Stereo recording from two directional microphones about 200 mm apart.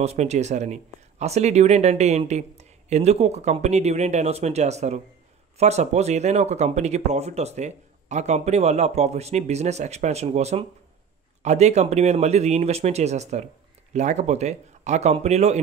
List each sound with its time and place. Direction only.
0.0 s speech: 35° right (ahead or behind)